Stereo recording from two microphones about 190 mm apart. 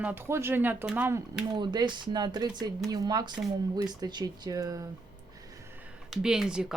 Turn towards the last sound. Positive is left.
turn(degrees=-5)  # may be behind; listen again after turning